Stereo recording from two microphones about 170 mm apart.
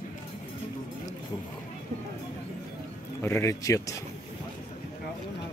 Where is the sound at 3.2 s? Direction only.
15° left (ahead or behind).